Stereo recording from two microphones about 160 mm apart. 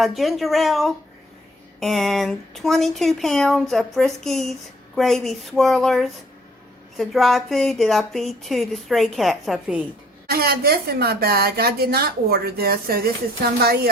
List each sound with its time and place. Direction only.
0.2 s speech: centre (ahead or behind)
10.2 s a woman's voice: 75° right (ahead or behind)